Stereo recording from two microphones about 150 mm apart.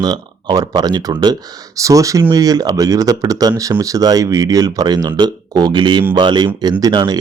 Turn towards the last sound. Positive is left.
turn(degrees=-30)  # may be behind; listen again after turning